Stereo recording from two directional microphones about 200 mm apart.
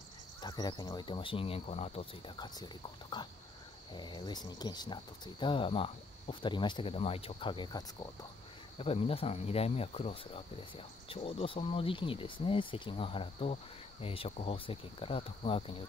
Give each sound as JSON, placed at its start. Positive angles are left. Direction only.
{"t": 0.4, "sound": "speech", "side_deg": 20}